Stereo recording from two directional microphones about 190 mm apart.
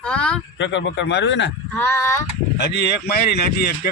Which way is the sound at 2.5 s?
65° left (ahead or behind).